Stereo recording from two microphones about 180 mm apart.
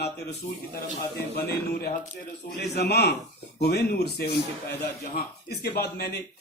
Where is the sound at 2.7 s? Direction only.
65° left (ahead or behind).